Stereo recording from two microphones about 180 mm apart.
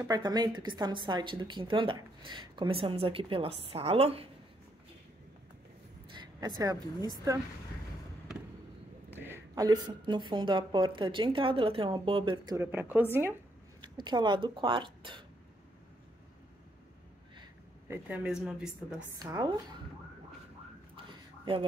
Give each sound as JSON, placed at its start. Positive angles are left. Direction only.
{"t": 0.0, "sound": "a woman's voice", "side_deg": -20}
{"t": 6.1, "sound": "a woman's voice", "side_deg": -25}
{"t": 9.1, "sound": "a woman's voice", "side_deg": -10}
{"t": 12.5, "sound": "a woman's voice", "side_deg": -10}
{"t": 13.7, "sound": "speech", "side_deg": -25}
{"t": 17.8, "sound": "speech", "side_deg": -10}
{"t": 19.1, "sound": "a woman's voice", "side_deg": -20}